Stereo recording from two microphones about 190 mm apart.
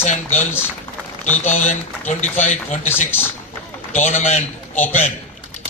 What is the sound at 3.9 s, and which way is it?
Speech, 35° left (ahead or behind).